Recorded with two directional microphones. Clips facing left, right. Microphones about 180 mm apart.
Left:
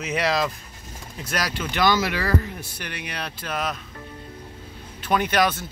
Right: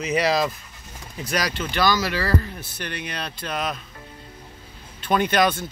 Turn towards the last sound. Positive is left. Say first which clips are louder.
# right 1 dB
turn(degrees=5)  # may be behind; listen again after turning